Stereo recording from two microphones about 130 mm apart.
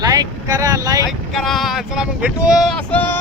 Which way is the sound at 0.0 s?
30° right (ahead or behind).